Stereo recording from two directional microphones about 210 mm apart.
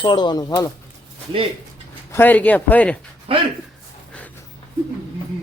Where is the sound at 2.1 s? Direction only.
10° left (ahead or behind).